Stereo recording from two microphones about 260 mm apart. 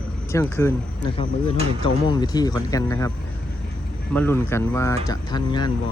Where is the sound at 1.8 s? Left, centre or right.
Centre.